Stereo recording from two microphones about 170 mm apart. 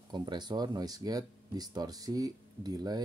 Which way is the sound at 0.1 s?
25° right (ahead or behind).